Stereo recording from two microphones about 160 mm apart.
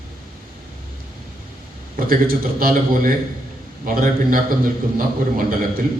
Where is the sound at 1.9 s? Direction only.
65° right (ahead or behind).